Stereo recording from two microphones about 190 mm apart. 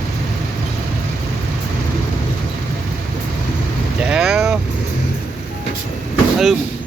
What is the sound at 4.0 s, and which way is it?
Vehicle, 5° right (ahead or behind).